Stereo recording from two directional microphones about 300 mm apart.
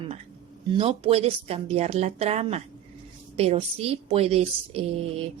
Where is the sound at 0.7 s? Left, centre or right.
Centre.